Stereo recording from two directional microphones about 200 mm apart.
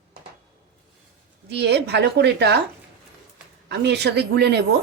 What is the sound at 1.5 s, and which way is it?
Speech, 55° right (ahead or behind).